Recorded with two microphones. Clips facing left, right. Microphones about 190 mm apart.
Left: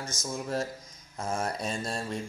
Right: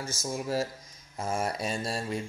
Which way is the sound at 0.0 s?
25° right (ahead or behind).